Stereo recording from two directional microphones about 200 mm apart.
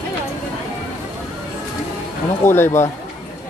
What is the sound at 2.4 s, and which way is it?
Speech, 10° left (ahead or behind).